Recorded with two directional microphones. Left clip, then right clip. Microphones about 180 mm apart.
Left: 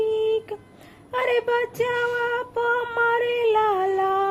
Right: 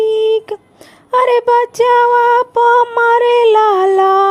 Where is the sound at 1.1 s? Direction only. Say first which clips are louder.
Right 12 dB; 45° right (ahead or behind).